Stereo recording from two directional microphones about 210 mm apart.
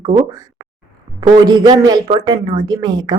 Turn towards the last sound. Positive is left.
turn(degrees=-20)  # may be behind; listen again after turning